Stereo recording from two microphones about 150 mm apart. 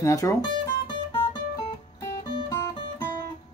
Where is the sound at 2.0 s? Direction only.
25° left (ahead or behind).